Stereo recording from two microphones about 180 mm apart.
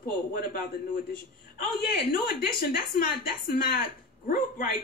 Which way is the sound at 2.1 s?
55° left (ahead or behind).